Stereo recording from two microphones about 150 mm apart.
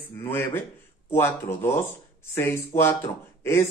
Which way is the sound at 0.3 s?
15° left (ahead or behind).